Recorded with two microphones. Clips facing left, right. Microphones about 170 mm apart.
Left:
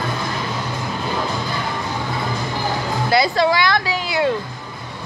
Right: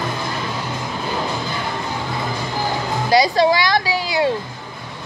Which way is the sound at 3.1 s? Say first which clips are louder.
Right 2 dB; 15° right (ahead or behind).